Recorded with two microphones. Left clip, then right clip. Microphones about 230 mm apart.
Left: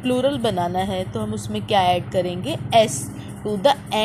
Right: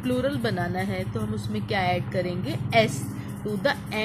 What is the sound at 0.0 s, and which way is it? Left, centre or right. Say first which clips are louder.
Speech: left 6 dB; centre.